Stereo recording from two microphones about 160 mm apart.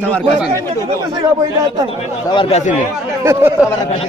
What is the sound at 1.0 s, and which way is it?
Speech, 25° right (ahead or behind).